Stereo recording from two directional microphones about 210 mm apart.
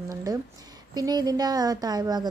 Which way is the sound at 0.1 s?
15° right (ahead or behind).